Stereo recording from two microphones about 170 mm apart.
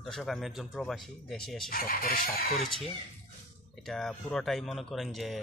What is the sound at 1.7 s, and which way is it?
Speech, 60° left (ahead or behind).